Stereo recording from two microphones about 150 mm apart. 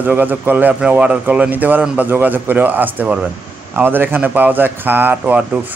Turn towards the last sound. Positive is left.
turn(degrees=-10)  # may be behind; listen again after turning